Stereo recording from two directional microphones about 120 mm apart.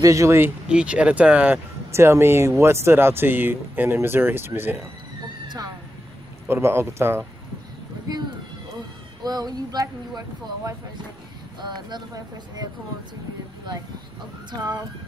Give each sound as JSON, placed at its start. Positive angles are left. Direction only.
{"t": 0.0, "sound": "speech", "side_deg": -25}
{"t": 0.7, "sound": "speech", "side_deg": -10}
{"t": 6.4, "sound": "speech", "side_deg": -20}
{"t": 9.2, "sound": "speech", "side_deg": -35}
{"t": 14.5, "sound": "speech", "side_deg": -35}